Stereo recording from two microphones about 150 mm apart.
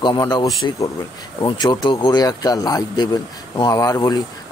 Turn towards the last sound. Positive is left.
turn(degrees=25)  # may be behind; listen again after turning